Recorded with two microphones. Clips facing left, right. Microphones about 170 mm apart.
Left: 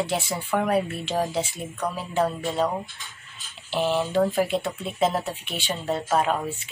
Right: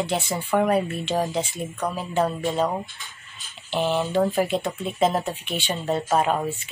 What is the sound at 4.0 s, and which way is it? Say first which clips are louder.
Speech: right 1 dB; centre (ahead or behind).